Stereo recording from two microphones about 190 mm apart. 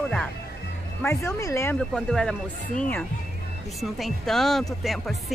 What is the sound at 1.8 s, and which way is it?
Speech, 5° left (ahead or behind).